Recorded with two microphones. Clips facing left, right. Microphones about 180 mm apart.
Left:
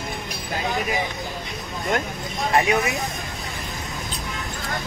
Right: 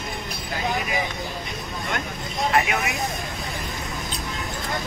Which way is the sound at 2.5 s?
30° left (ahead or behind).